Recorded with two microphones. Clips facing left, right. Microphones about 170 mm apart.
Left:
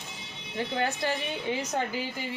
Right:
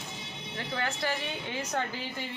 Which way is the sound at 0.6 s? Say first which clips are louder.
Left 4 dB; 20° left (ahead or behind).